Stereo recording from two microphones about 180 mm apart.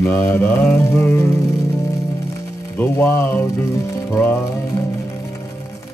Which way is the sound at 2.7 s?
15° left (ahead or behind).